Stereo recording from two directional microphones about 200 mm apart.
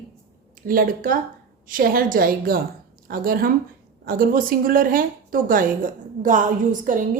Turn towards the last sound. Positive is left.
turn(degrees=-40)  # may be behind; listen again after turning